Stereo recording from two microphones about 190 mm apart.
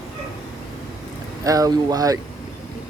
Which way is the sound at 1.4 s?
20° right (ahead or behind).